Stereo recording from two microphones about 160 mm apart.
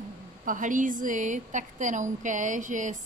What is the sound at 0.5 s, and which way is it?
A woman's voice, 55° right (ahead or behind).